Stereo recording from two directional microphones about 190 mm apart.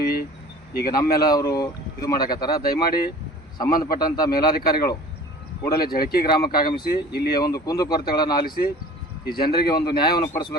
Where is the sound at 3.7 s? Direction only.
50° left (ahead or behind).